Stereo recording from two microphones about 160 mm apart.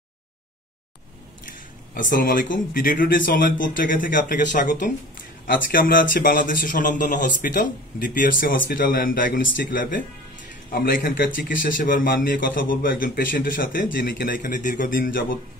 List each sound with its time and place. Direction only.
2.0 s speech: 60° left (ahead or behind)